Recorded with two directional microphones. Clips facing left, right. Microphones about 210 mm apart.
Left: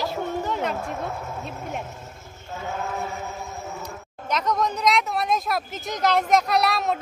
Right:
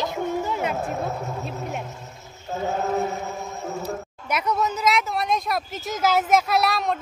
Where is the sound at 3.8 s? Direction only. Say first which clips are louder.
Right 5 dB; 10° right (ahead or behind).